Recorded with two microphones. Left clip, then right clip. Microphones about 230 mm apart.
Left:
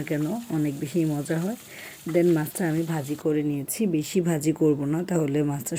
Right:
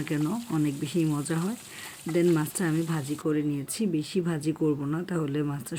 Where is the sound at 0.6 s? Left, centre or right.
Centre.